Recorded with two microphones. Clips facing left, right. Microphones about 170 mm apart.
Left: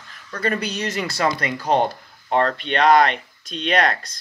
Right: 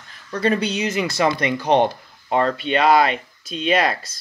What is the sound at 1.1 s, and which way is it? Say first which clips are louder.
Speech: right 2 dB; 20° right (ahead or behind).